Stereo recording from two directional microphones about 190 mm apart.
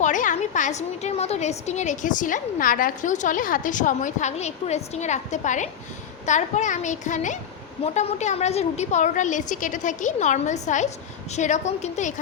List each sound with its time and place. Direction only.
0.0 s a woman's voice: 40° left (ahead or behind)